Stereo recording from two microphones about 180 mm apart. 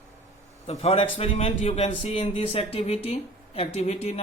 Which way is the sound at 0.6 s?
35° left (ahead or behind).